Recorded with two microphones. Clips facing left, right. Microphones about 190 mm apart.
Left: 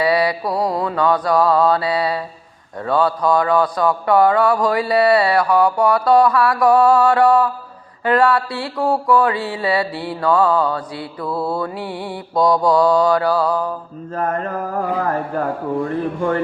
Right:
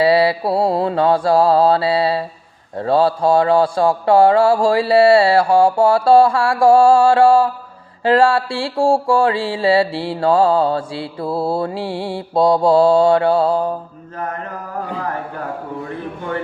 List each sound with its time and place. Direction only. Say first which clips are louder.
0.0 s mantra: right 3 dB; 25° right (ahead or behind)
15.8 s speech: left 7 dB; 45° left (ahead or behind)